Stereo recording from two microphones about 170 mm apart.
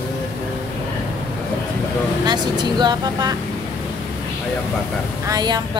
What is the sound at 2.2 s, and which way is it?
Speech, 25° right (ahead or behind).